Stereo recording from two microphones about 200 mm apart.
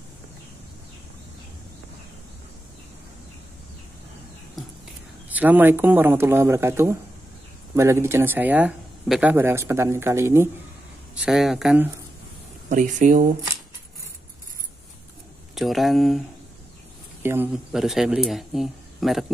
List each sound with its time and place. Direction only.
4.6 s whispering: centre (ahead or behind)
5.3 s speech: 10° right (ahead or behind)
11.2 s speech: centre (ahead or behind)
12.6 s speech: 40° right (ahead or behind)
15.5 s speech: centre (ahead or behind)
17.2 s speech: 10° right (ahead or behind)